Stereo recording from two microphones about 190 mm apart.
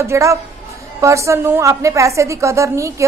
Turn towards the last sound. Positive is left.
turn(degrees=-15)  # may be behind; listen again after turning